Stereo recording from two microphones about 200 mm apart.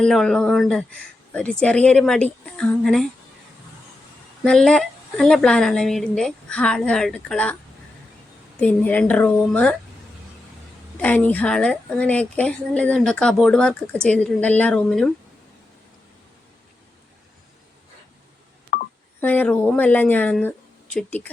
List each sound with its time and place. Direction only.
0.0 s a woman's voice: centre (ahead or behind)
4.4 s a woman's voice: 5° left (ahead or behind)
8.5 s speech: 5° left (ahead or behind)
10.9 s a woman's voice: 10° left (ahead or behind)
18.7 s telephone dialing: 40° left (ahead or behind)
19.2 s speech: 10° left (ahead or behind)